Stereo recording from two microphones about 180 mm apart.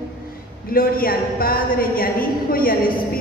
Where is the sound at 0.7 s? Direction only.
55° left (ahead or behind).